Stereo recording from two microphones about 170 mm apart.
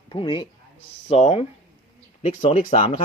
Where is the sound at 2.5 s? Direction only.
45° left (ahead or behind).